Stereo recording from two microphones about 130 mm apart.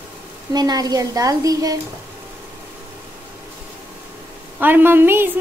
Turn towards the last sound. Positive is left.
turn(degrees=-15)  # may be behind; listen again after turning